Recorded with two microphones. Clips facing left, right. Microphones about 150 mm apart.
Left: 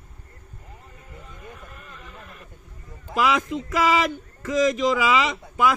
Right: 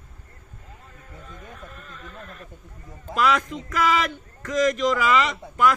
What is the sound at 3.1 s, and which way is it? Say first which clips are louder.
Speech: even; 10° left (ahead or behind).